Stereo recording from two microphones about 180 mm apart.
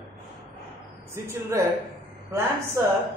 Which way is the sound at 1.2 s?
15° right (ahead or behind).